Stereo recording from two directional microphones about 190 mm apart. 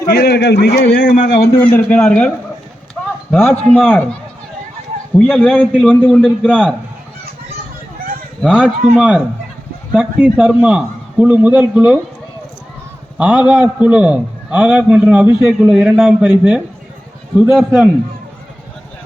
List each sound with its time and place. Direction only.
0.1 s a man's voice: 55° left (ahead or behind)
1.7 s a man's voice: 5° left (ahead or behind)
3.3 s a man's voice: 10° left (ahead or behind)
8.4 s a man's voice: centre (ahead or behind)
13.1 s a man's voice: 5° right (ahead or behind)